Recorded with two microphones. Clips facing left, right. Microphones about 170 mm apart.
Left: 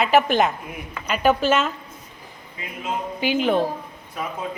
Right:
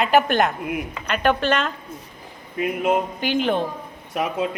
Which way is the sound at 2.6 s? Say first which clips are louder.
Right 9 dB; 60° right (ahead or behind).